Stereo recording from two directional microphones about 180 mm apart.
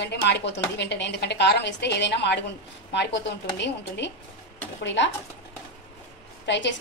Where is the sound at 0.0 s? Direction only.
70° left (ahead or behind).